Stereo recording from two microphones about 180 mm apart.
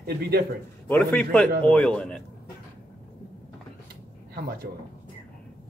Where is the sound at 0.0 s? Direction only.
60° right (ahead or behind).